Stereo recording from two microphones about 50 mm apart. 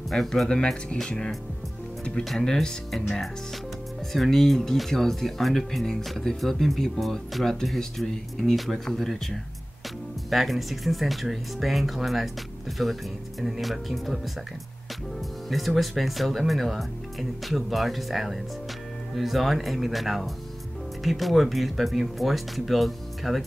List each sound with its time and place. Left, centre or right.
0.1 s speech: centre
0.5 s speech: centre
10.3 s speech: centre
15.5 s speech: centre